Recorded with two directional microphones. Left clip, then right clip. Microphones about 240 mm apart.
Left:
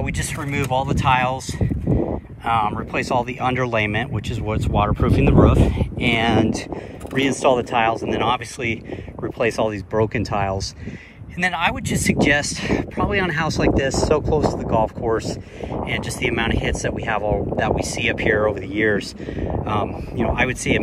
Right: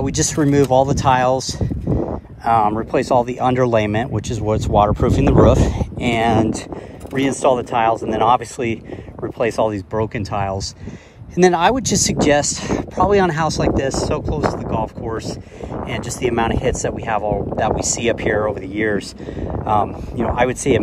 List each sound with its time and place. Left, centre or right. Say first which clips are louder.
0.0 s speech: right 8 dB; centre
1.9 s a sound: right 1 dB; left
2.4 s speech: right 5 dB; right
11.3 s speech: right 7 dB; centre